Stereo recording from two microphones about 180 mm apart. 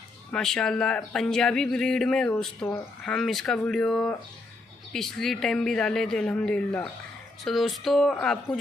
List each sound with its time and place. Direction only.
0.3 s speech: 5° left (ahead or behind)